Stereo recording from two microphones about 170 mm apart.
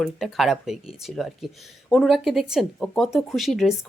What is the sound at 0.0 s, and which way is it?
Speech, centre (ahead or behind).